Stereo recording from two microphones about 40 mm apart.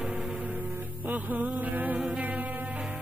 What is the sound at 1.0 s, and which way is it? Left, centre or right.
Music, right.